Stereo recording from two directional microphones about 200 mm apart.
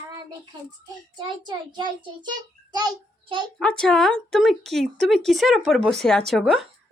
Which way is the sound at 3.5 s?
5° left (ahead or behind).